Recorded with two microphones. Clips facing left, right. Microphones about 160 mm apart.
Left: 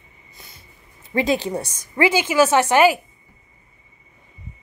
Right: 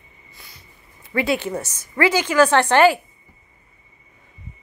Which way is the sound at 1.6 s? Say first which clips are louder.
Left 1 dB; 15° left (ahead or behind).